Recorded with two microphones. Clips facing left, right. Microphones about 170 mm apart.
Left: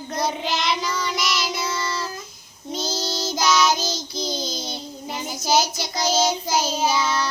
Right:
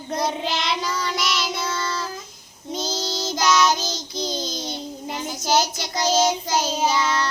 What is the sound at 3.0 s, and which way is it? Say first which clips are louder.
Child singing: even; 15° right (ahead or behind).